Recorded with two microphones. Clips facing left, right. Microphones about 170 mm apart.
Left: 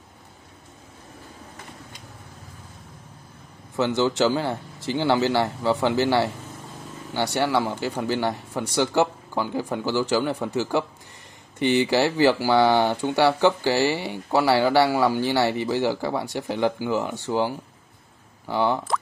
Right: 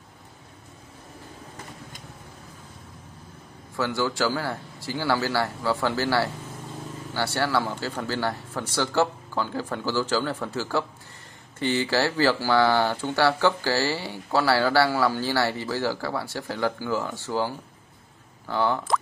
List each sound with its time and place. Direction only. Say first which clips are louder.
3.7 s speech: left 4 dB; 20° left (ahead or behind)